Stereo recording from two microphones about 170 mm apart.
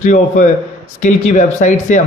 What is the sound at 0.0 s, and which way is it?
A man's voice, 45° left (ahead or behind).